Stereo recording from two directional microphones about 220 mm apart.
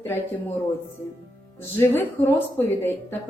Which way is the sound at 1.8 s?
10° left (ahead or behind).